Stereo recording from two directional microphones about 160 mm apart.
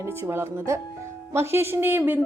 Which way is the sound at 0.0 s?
15° right (ahead or behind).